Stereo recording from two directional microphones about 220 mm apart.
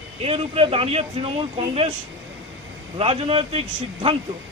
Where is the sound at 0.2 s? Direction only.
25° right (ahead or behind).